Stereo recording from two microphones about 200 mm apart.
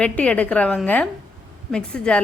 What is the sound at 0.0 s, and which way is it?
A woman's voice, 5° left (ahead or behind).